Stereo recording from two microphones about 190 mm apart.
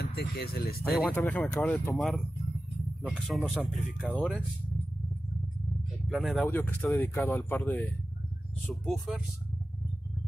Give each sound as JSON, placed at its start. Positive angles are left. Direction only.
{"t": 0.0, "sound": "speech", "side_deg": 60}
{"t": 0.9, "sound": "speech", "side_deg": 0}
{"t": 6.0, "sound": "speech", "side_deg": 0}